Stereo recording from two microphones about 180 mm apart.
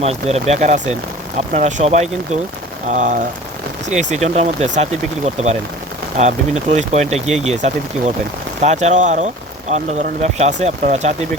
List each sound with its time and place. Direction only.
0.0 s speech: 35° right (ahead or behind)
2.9 s rain on surface: 45° right (ahead or behind)
3.8 s speech: 40° right (ahead or behind)